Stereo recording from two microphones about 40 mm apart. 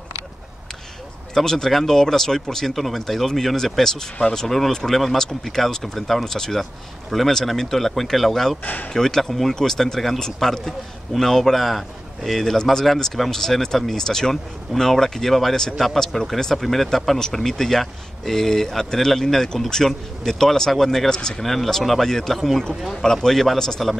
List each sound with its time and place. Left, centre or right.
1.3 s a man's voice: centre
8.6 s speech: left
8.9 s a man's voice: centre